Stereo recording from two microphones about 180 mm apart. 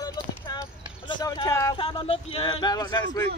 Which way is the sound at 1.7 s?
30° left (ahead or behind).